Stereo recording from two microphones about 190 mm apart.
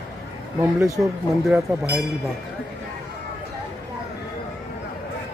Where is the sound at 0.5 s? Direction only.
15° right (ahead or behind).